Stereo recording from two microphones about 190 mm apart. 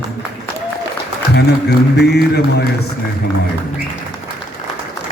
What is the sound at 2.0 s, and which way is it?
Speech, 60° left (ahead or behind).